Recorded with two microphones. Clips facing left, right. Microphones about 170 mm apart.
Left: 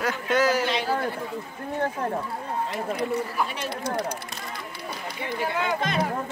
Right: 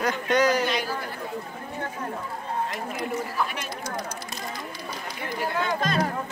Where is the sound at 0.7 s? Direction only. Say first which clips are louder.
Left 2 dB; 25° left (ahead or behind).